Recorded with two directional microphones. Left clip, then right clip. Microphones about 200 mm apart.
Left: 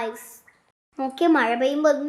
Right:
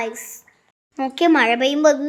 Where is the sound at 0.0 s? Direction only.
15° right (ahead or behind).